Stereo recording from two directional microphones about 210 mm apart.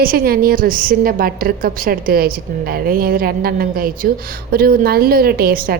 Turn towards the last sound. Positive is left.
turn(degrees=-45)  # may be behind; listen again after turning